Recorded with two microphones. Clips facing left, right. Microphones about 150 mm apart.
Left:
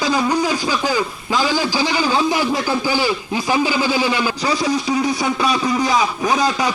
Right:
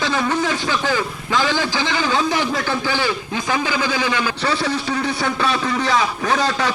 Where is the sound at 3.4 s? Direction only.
15° left (ahead or behind).